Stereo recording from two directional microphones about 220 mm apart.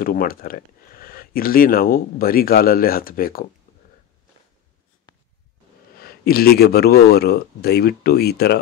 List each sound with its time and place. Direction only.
0.0 s speech: 40° left (ahead or behind)
5.9 s speech: 45° left (ahead or behind)